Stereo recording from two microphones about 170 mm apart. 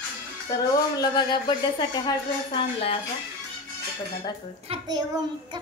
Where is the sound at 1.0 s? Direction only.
25° left (ahead or behind).